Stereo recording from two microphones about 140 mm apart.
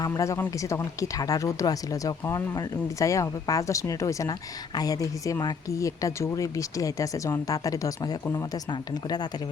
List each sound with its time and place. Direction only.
0.0 s speech: 20° left (ahead or behind)